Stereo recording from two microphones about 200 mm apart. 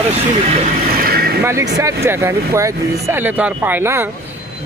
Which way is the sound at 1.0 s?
50° right (ahead or behind).